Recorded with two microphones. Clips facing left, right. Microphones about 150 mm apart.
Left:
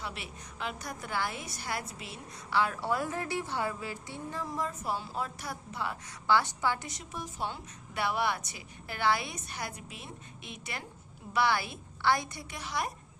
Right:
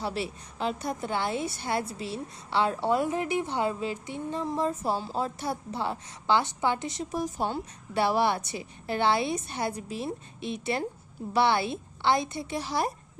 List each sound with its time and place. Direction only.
0.0 s a woman's voice: 35° right (ahead or behind)